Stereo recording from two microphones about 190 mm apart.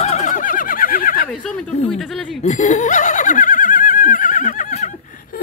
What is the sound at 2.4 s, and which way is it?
Laughter, 35° left (ahead or behind).